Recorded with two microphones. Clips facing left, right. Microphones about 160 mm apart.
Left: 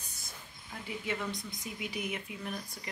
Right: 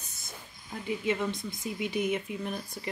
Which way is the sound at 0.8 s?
25° right (ahead or behind).